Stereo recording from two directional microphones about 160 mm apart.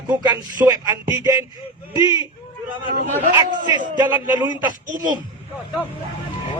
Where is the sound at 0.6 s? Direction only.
25° right (ahead or behind).